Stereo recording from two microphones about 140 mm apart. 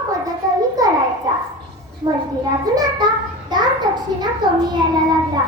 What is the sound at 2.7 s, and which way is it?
Child singing, 25° right (ahead or behind).